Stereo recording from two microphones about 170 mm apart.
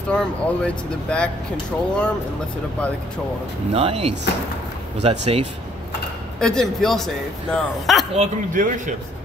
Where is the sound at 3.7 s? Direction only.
35° right (ahead or behind).